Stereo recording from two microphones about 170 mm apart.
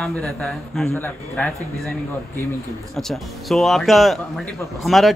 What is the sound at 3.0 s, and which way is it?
Speech, centre (ahead or behind).